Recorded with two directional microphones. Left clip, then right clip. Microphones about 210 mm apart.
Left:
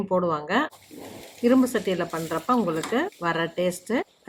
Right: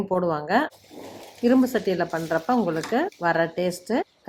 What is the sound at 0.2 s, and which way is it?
Speech, 10° right (ahead or behind).